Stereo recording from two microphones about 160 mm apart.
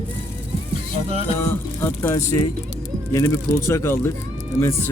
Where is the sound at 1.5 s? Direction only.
10° left (ahead or behind).